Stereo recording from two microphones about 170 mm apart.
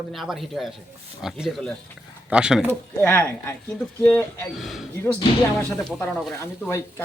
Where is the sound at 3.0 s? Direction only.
15° left (ahead or behind).